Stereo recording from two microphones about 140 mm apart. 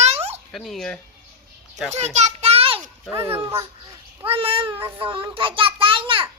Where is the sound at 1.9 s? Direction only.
55° right (ahead or behind).